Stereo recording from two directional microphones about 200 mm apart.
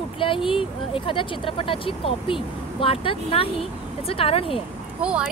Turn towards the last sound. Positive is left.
turn(degrees=-5)  # may be behind; listen again after turning